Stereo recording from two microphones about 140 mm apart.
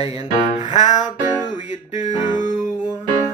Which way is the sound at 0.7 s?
60° left (ahead or behind).